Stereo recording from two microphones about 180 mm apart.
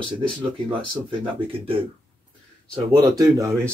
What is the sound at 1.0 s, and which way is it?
Speech, 30° right (ahead or behind).